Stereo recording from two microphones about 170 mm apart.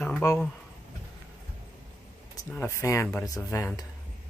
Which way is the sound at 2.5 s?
15° left (ahead or behind).